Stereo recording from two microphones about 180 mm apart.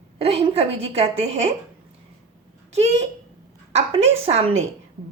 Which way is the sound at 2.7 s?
35° right (ahead or behind).